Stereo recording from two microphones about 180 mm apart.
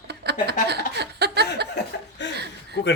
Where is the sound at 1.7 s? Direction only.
75° left (ahead or behind).